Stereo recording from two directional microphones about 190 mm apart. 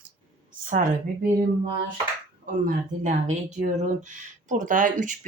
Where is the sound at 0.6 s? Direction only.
45° right (ahead or behind).